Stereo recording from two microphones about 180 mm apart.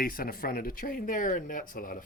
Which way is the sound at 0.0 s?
55° left (ahead or behind).